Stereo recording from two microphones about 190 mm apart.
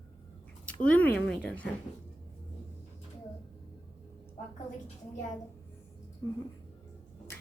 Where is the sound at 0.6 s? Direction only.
5° left (ahead or behind).